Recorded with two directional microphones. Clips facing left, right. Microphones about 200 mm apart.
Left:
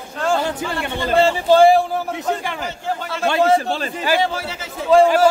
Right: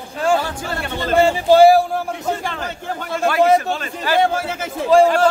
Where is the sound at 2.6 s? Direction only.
50° right (ahead or behind).